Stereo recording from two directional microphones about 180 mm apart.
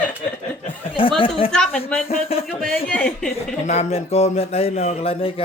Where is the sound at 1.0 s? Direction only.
30° left (ahead or behind).